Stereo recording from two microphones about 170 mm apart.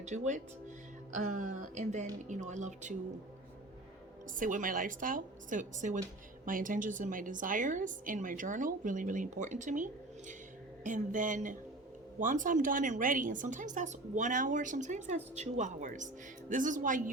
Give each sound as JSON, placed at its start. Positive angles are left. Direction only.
{"t": 0.0, "sound": "a woman's voice", "side_deg": -45}
{"t": 4.4, "sound": "a woman's voice", "side_deg": -50}